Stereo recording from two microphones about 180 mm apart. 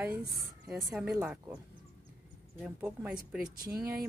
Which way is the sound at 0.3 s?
Centre (ahead or behind).